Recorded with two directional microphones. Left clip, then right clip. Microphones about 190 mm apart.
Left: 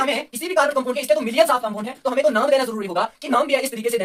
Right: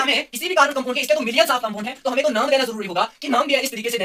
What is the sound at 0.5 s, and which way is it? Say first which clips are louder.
Speech: right 1 dB; 20° left (ahead or behind).